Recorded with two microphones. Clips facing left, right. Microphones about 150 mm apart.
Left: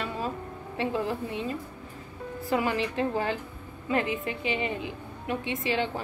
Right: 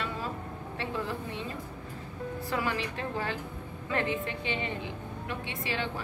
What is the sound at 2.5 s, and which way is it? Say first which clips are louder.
A woman's voice: left 6 dB; 20° left (ahead or behind).